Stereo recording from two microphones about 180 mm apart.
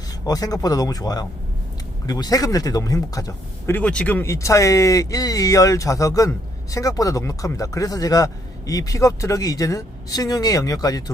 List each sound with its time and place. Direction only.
0.3 s speech: 20° left (ahead or behind)